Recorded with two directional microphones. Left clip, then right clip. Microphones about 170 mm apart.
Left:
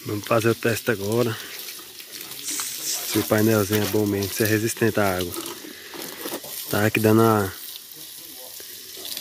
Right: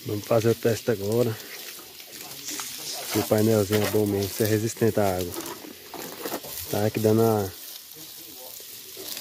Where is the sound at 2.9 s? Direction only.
10° left (ahead or behind).